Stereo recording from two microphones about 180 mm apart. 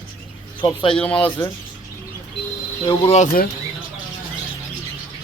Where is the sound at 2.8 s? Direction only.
35° left (ahead or behind).